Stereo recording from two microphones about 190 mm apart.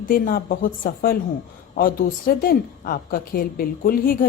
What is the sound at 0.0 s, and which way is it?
A woman's voice, 50° left (ahead or behind).